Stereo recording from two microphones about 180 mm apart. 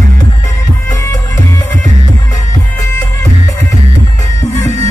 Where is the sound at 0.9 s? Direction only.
20° left (ahead or behind).